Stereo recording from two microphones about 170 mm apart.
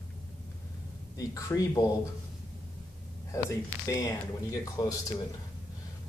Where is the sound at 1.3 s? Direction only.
20° left (ahead or behind).